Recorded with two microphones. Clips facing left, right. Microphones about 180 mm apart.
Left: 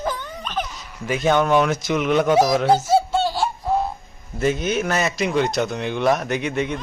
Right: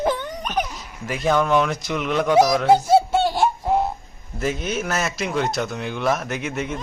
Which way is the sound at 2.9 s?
20° right (ahead or behind).